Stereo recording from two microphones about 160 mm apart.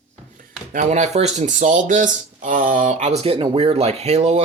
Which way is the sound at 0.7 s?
45° right (ahead or behind).